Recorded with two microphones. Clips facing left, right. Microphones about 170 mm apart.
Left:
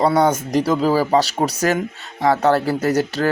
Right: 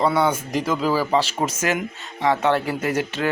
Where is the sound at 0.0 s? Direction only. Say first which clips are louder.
Left 4 dB; 40° left (ahead or behind).